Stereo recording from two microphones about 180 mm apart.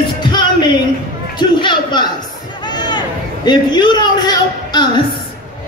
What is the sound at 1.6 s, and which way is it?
Speech, 25° left (ahead or behind).